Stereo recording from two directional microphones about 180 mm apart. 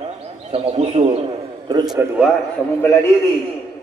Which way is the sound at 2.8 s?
15° left (ahead or behind).